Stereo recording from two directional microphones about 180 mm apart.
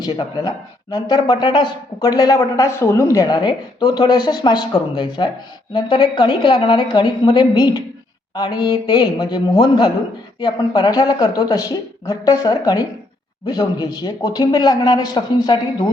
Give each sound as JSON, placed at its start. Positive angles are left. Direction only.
{"t": 0.0, "sound": "speech", "side_deg": 20}